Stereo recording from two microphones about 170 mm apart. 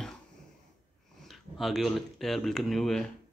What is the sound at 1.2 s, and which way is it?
Speech, centre (ahead or behind).